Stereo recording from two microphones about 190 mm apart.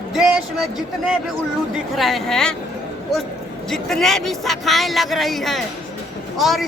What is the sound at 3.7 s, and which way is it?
Speech, centre (ahead or behind).